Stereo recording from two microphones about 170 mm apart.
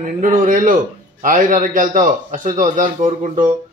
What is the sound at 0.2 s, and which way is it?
Speech, 50° right (ahead or behind).